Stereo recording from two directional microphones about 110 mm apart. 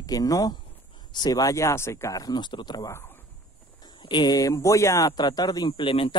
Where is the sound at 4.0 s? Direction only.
40° left (ahead or behind).